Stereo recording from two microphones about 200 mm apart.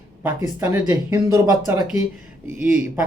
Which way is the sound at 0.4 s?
20° right (ahead or behind).